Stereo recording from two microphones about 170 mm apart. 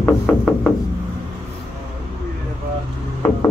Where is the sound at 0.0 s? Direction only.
10° left (ahead or behind).